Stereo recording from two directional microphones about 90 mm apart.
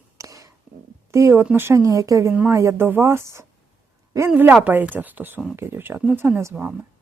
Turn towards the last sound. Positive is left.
turn(degrees=-25)  # may be behind; listen again after turning